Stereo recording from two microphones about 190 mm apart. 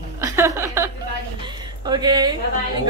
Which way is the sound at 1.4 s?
20° right (ahead or behind).